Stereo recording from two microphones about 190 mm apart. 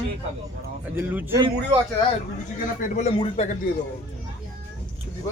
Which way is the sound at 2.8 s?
40° left (ahead or behind).